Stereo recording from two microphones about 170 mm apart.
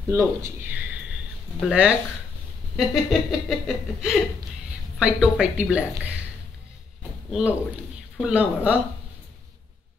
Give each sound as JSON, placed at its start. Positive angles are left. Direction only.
{"t": 0.1, "sound": "speech", "side_deg": -15}
{"t": 2.7, "sound": "a sound", "side_deg": 0}
{"t": 4.9, "sound": "speech", "side_deg": -5}
{"t": 7.2, "sound": "speech", "side_deg": 0}